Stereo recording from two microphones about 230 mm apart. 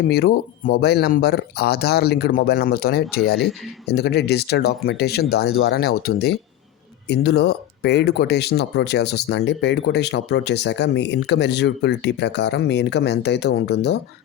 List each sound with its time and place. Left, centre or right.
0.1 s speech: left